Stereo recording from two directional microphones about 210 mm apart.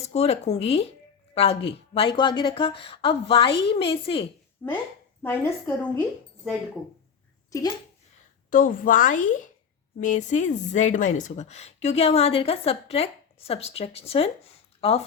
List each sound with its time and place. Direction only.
0.0 s a woman's voice: 30° left (ahead or behind)
4.6 s a woman's voice: 10° left (ahead or behind)
7.5 s a woman's voice: 15° left (ahead or behind)
8.4 s a woman's voice: 40° left (ahead or behind)